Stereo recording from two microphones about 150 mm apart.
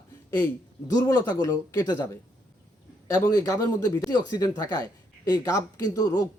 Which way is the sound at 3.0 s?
20° left (ahead or behind).